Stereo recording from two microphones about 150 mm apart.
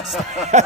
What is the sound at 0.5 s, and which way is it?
Speech, 50° right (ahead or behind).